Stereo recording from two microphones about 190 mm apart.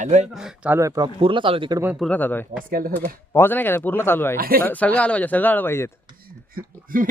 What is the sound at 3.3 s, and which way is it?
A woman's voice, 10° left (ahead or behind).